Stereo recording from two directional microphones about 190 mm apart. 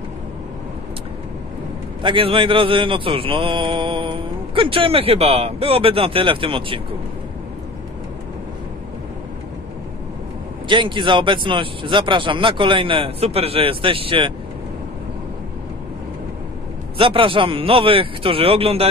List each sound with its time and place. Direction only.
2.0 s speech: 25° right (ahead or behind)
10.7 s speech: 25° right (ahead or behind)
17.0 s speech: 25° right (ahead or behind)